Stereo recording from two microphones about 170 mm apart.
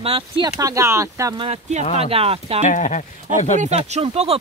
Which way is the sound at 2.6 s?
45° left (ahead or behind).